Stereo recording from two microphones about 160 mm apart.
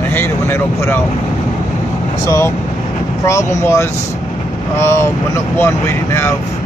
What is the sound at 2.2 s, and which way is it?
Speech, 20° left (ahead or behind).